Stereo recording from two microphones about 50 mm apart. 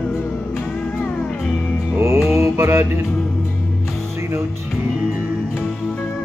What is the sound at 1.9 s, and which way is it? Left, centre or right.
Music, right.